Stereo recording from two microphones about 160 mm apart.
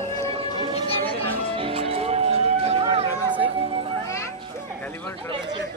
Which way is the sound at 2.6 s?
40° right (ahead or behind).